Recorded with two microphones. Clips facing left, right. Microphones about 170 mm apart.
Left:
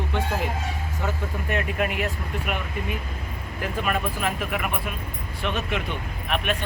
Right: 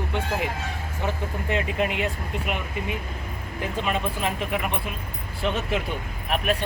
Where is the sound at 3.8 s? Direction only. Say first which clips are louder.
Even; 25° right (ahead or behind).